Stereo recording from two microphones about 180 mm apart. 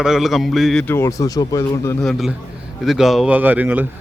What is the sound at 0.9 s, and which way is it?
Speech, 15° left (ahead or behind).